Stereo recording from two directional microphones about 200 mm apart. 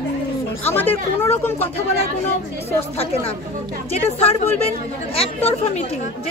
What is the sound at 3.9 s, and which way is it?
Speech, 30° left (ahead or behind).